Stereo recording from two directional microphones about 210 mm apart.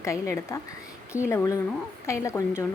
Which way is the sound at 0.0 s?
15° left (ahead or behind).